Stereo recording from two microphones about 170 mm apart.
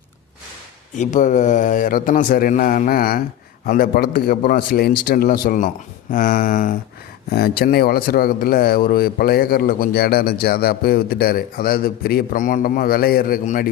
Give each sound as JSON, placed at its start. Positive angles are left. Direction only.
{"t": 0.9, "sound": "a man's voice", "side_deg": 45}
{"t": 7.3, "sound": "speech", "side_deg": 65}